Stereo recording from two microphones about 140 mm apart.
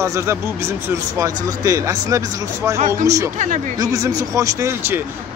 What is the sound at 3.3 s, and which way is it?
Speech, 65° right (ahead or behind).